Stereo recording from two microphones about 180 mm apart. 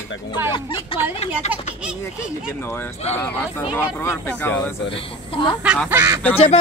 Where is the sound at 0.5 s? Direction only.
30° left (ahead or behind).